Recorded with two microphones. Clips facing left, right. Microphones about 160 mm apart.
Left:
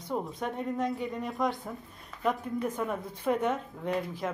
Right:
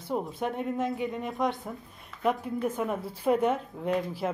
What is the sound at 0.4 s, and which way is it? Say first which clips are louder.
Speech: right 1 dB; 5° right (ahead or behind).